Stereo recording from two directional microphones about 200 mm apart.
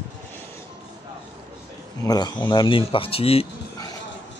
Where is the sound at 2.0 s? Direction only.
20° left (ahead or behind).